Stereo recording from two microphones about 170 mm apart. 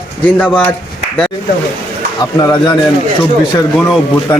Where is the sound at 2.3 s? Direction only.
25° left (ahead or behind).